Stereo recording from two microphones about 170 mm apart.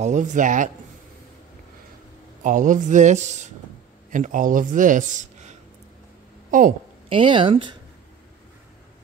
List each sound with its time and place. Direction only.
0.0 s speech: 45° right (ahead or behind)
2.4 s speech: 50° right (ahead or behind)
7.1 s speech: 30° right (ahead or behind)